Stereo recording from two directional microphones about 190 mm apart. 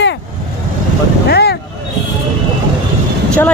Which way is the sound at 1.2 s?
60° left (ahead or behind).